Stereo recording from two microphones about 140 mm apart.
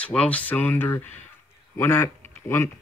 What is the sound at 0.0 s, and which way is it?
Speech, 10° left (ahead or behind).